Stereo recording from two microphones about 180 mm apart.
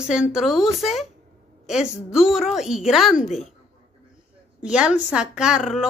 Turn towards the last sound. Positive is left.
turn(degrees=0)  # may be behind; listen again after turning